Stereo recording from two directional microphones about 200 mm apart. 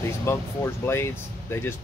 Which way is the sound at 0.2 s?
15° left (ahead or behind).